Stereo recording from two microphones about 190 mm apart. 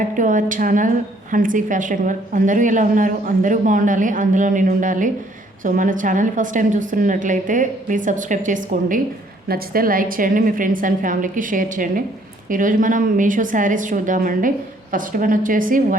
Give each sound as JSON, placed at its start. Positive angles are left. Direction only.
{"t": 0.2, "sound": "a woman's voice", "side_deg": -45}